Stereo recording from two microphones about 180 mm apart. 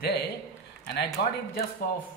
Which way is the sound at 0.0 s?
65° left (ahead or behind).